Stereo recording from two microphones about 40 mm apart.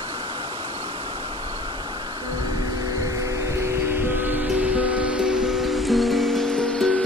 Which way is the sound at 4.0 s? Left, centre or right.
Right.